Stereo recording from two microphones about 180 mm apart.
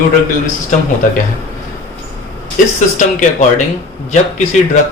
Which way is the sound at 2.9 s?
45° left (ahead or behind).